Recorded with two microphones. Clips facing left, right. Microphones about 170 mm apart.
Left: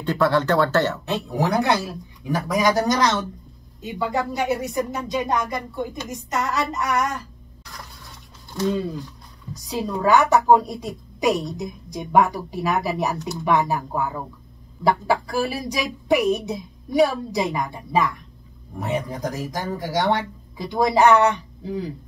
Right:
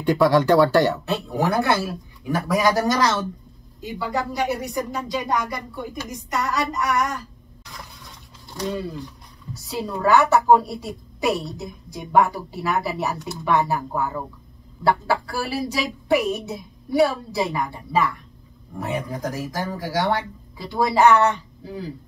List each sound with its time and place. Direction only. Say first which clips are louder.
0.0 s speech: right 3 dB; 10° right (ahead or behind)
1.0 s speech: even; 20° left (ahead or behind)
9.5 s a woman's voice: left 2 dB; 15° left (ahead or behind)